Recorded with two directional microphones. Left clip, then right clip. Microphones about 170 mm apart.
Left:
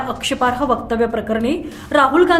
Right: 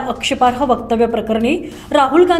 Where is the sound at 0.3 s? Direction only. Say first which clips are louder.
Right 4 dB; 5° right (ahead or behind).